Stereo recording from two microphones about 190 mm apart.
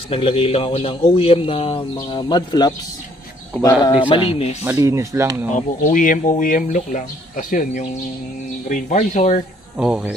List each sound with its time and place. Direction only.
0.1 s a man's voice: 30° left (ahead or behind)
3.8 s a man's voice: 25° left (ahead or behind)
4.6 s speech: 15° right (ahead or behind)
5.5 s speech: 45° left (ahead or behind)
9.8 s speech: 5° right (ahead or behind)